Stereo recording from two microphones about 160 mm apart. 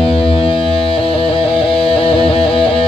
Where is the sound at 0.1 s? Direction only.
35° left (ahead or behind).